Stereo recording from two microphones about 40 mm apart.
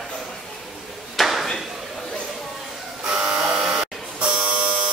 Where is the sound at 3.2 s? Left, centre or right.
Centre.